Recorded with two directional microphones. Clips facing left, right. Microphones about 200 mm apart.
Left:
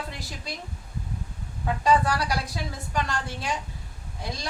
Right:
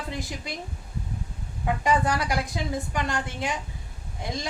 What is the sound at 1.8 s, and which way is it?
A woman's voice, 20° right (ahead or behind).